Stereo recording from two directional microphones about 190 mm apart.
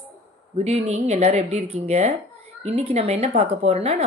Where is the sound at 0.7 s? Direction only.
35° right (ahead or behind).